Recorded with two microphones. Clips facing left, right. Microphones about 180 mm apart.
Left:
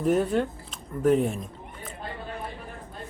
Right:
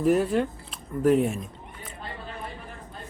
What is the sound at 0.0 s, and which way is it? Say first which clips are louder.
Speech: right 1 dB; centre (ahead or behind).